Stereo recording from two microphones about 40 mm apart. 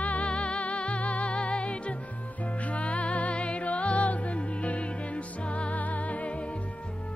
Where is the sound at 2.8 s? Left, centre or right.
Left.